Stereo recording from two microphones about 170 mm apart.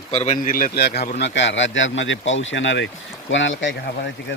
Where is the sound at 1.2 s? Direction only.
90° left.